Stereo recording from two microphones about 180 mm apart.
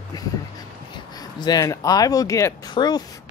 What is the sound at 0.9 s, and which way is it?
Speech, 25° left (ahead or behind).